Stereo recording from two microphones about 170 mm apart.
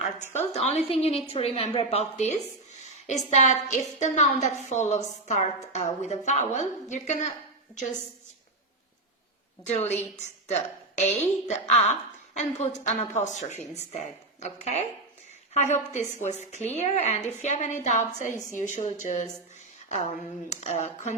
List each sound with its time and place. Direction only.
0.3 s a woman's voice: 40° left (ahead or behind)
9.6 s a woman's voice: 40° left (ahead or behind)